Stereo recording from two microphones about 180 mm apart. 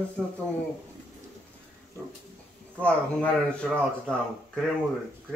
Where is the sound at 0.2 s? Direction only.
5° left (ahead or behind).